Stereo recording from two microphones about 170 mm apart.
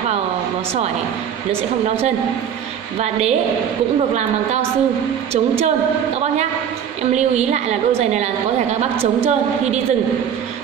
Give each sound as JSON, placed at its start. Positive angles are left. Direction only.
{"t": 3.0, "sound": "a woman's voice", "side_deg": -40}
{"t": 7.0, "sound": "a woman's voice", "side_deg": -40}